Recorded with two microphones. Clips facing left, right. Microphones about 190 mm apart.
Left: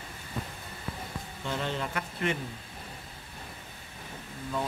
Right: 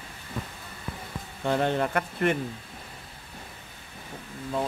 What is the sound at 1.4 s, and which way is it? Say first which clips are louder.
Speech: right 8 dB; 55° right (ahead or behind).